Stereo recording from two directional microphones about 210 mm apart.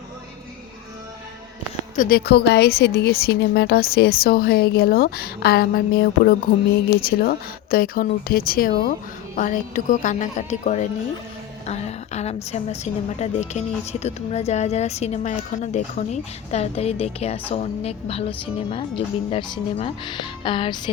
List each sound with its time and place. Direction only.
2.0 s a woman's voice: 45° left (ahead or behind); by 20.9 s 25° left (ahead or behind)